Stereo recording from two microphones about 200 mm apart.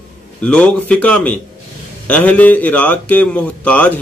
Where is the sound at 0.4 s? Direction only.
5° left (ahead or behind).